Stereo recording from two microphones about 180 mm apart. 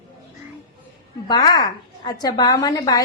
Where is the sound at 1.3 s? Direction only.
20° left (ahead or behind).